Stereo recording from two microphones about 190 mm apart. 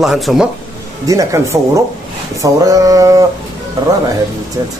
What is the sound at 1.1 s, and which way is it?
Speech, 15° right (ahead or behind).